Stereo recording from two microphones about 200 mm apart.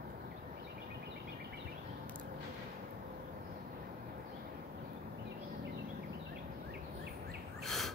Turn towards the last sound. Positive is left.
turn(degrees=0)  # may be behind; listen again after turning